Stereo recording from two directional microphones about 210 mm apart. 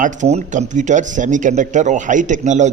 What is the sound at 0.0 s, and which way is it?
A man's voice, 35° right (ahead or behind).